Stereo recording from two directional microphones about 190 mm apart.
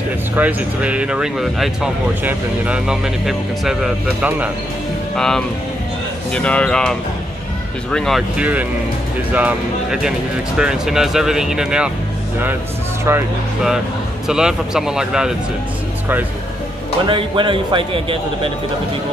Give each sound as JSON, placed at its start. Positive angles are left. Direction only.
{"t": 0.4, "sound": "speech", "side_deg": -10}
{"t": 14.2, "sound": "speech", "side_deg": -5}
{"t": 17.0, "sound": "speech", "side_deg": -25}